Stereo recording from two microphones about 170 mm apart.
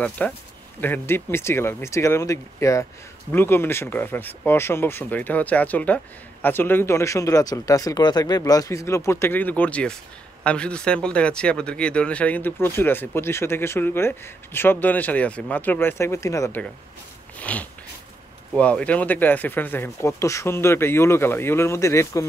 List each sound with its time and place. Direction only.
0.2 s speech: 10° left (ahead or behind)
17.4 s a sound: 10° left (ahead or behind)
18.5 s speech: 5° left (ahead or behind)